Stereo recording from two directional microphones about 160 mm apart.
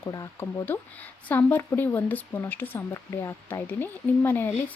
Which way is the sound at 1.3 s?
10° left (ahead or behind).